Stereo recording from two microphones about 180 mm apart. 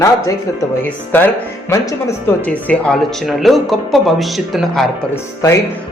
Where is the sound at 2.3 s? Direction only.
10° left (ahead or behind).